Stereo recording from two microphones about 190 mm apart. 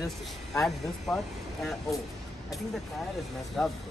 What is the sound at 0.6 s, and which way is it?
Speech, centre (ahead or behind).